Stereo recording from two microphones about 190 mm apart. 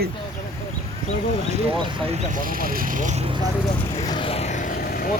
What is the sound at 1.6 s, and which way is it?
Speech, 25° right (ahead or behind).